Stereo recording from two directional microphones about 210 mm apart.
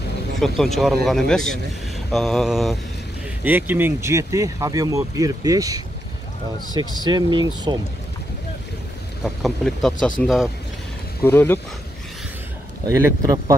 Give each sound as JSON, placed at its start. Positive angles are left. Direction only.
{"t": 0.4, "sound": "speech", "side_deg": 0}
{"t": 9.2, "sound": "speech", "side_deg": 0}
{"t": 11.2, "sound": "speech", "side_deg": 10}
{"t": 12.8, "sound": "speech", "side_deg": -15}